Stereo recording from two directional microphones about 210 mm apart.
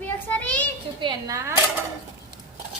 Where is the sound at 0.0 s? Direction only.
5° left (ahead or behind).